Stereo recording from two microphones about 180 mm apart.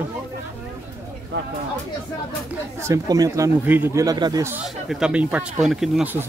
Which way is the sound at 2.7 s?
15° right (ahead or behind).